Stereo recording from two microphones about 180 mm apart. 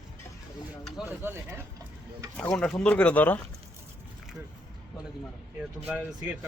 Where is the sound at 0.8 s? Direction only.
Centre (ahead or behind).